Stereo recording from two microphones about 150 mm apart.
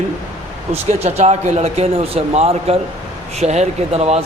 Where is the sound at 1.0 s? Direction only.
45° right (ahead or behind).